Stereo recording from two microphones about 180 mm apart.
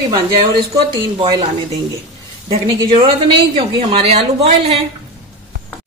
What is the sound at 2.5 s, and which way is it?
A woman's voice, 30° right (ahead or behind).